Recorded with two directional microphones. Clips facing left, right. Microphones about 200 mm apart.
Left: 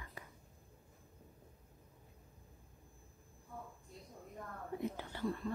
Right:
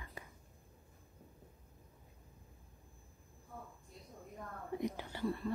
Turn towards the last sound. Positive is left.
turn(degrees=-10)  # may be behind; listen again after turning